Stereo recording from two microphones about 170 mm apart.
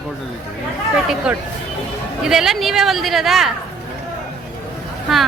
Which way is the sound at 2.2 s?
5° right (ahead or behind).